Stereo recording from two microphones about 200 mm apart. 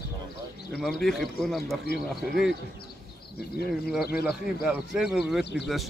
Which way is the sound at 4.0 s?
50° left (ahead or behind).